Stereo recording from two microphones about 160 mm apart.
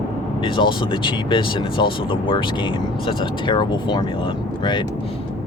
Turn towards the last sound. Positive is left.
turn(degrees=30)  # may be behind; listen again after turning